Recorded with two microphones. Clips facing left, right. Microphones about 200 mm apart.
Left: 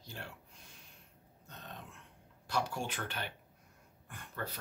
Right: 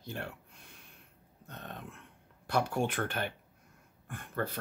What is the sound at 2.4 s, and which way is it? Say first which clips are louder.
Speech: right 6 dB; 55° right (ahead or behind).